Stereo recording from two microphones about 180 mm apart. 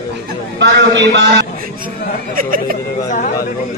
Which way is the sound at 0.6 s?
85° right.